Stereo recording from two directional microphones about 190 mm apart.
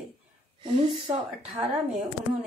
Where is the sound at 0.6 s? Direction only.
25° right (ahead or behind).